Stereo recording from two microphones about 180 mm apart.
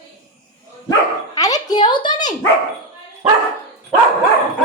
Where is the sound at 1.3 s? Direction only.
20° left (ahead or behind).